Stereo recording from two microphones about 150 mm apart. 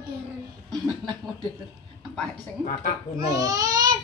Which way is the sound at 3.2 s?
25° right (ahead or behind).